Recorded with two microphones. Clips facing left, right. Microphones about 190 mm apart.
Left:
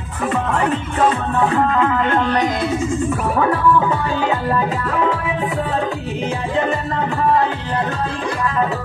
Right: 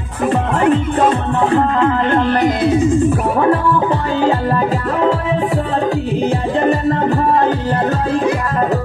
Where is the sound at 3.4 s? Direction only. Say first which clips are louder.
Right 1 dB; 30° right (ahead or behind).